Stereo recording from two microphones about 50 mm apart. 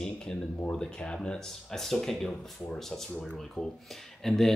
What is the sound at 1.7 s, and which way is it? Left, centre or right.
Speech, centre.